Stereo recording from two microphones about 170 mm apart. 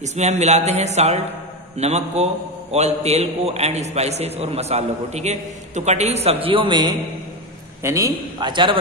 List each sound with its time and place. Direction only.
0.0 s a man's voice: 40° right (ahead or behind)